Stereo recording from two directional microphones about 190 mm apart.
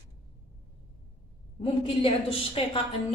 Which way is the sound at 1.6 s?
30° left (ahead or behind).